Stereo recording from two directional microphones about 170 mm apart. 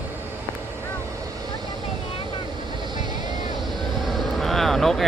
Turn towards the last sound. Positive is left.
turn(degrees=0)  # may be behind; listen again after turning